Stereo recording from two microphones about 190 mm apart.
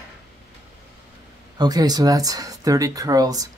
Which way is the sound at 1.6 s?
20° right (ahead or behind).